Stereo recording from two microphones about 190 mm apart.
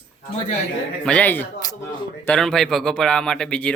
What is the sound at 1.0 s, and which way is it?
Speech, 5° left (ahead or behind).